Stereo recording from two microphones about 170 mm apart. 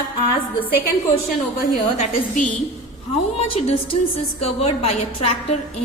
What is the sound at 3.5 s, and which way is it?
A woman's voice, 35° left (ahead or behind).